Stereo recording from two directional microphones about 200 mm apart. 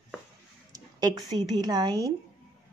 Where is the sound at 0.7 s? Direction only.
20° right (ahead or behind).